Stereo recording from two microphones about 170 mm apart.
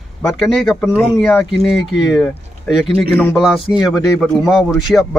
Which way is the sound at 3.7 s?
5° right (ahead or behind).